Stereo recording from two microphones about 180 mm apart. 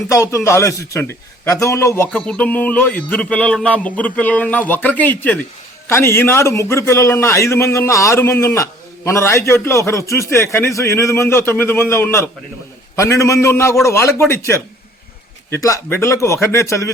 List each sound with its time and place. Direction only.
0.1 s a man's voice: 15° left (ahead or behind)
2.1 s a man's voice: 5° left (ahead or behind)